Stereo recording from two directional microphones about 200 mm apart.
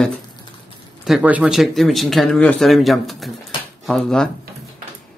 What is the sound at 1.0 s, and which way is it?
Speech, 5° right (ahead or behind).